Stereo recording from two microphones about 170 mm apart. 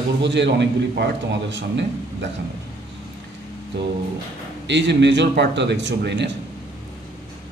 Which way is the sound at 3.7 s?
90° right.